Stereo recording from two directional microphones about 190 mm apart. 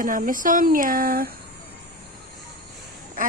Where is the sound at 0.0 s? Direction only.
45° right (ahead or behind).